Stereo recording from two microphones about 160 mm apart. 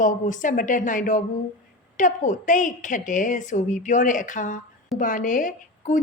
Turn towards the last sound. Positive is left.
turn(degrees=55)  # may be behind; listen again after turning